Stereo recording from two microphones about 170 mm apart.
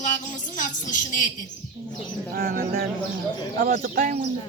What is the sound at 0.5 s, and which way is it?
Speech, 50° left (ahead or behind).